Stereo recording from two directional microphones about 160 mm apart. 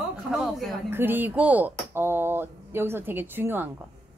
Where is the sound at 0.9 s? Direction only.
15° right (ahead or behind).